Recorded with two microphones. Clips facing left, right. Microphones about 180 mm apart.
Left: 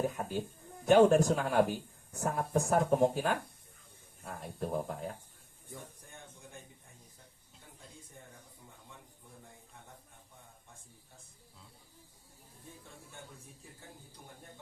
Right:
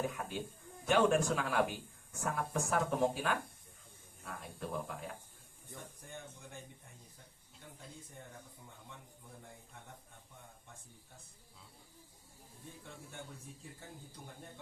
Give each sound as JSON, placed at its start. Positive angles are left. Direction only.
{"t": 0.2, "sound": "speech", "side_deg": 25}
{"t": 0.9, "sound": "speech", "side_deg": 40}